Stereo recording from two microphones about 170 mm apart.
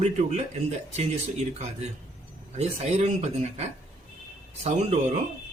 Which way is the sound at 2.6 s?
40° right (ahead or behind).